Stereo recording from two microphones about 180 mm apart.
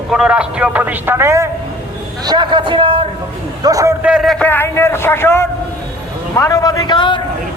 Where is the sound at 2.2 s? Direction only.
25° right (ahead or behind).